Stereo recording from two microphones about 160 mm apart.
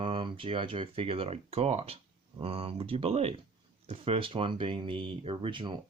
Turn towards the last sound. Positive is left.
turn(degrees=-30)  # may be behind; listen again after turning